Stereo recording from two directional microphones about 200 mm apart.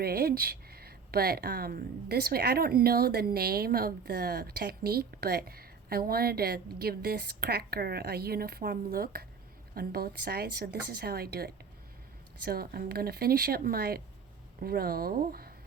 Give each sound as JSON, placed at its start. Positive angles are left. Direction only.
{"t": 0.0, "sound": "speech", "side_deg": -50}